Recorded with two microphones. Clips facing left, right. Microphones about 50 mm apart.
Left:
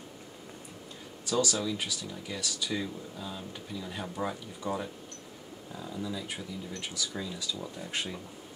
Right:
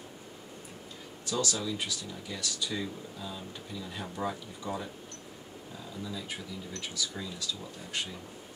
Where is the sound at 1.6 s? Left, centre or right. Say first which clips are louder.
Left 1 dB; centre.